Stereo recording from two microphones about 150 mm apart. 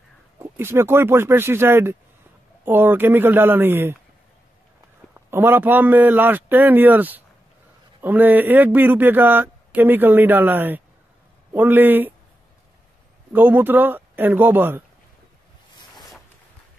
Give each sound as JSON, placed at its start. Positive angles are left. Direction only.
{"t": 0.4, "sound": "speech", "side_deg": -15}
{"t": 5.1, "sound": "speech", "side_deg": -15}
{"t": 13.3, "sound": "speech", "side_deg": -15}